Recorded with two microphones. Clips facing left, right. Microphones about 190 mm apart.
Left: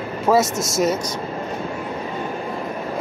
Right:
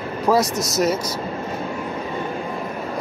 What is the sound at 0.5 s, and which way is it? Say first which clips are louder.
Speech: even; 25° left (ahead or behind).